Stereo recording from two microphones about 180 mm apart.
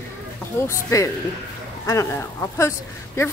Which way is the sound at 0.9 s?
20° left (ahead or behind).